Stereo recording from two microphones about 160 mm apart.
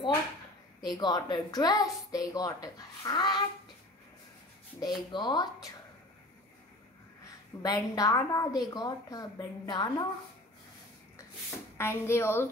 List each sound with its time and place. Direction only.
0.8 s a woman's voice: 25° left (ahead or behind)
4.7 s a woman's voice: 25° left (ahead or behind)
7.6 s a woman's voice: 25° left (ahead or behind)
11.8 s a woman's voice: 15° left (ahead or behind)